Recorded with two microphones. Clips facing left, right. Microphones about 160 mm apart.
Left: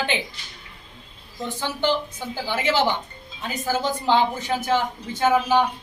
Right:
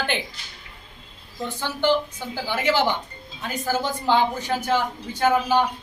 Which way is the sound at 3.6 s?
15° left (ahead or behind).